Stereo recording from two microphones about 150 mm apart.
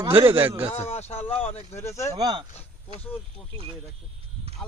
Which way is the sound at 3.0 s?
10° left (ahead or behind).